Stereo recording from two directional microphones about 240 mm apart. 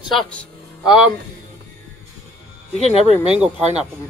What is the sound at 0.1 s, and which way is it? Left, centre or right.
Speech, centre.